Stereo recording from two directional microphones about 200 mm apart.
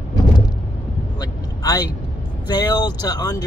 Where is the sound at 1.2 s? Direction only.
20° left (ahead or behind).